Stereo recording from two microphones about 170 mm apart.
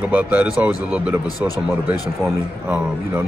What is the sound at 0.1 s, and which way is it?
A man's voice, 10° right (ahead or behind).